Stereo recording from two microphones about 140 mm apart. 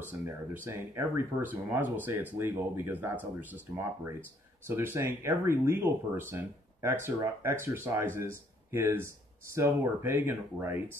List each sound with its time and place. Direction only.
0.1 s speech: 15° right (ahead or behind)